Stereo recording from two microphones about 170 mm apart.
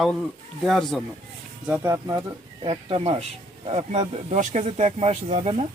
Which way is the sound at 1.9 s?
15° right (ahead or behind).